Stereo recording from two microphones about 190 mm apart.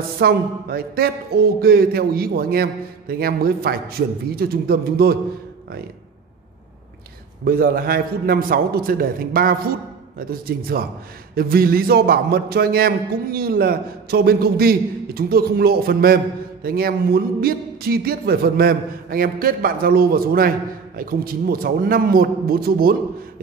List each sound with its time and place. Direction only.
0.2 s a man's voice: 55° right (ahead or behind)
7.4 s a man's voice: 50° right (ahead or behind)